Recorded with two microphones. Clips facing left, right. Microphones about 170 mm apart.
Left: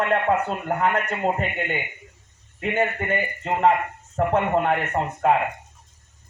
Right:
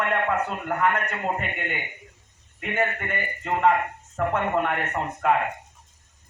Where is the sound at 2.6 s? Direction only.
30° left (ahead or behind).